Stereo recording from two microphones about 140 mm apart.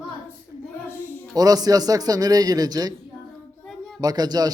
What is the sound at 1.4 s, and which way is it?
Speech, 25° right (ahead or behind).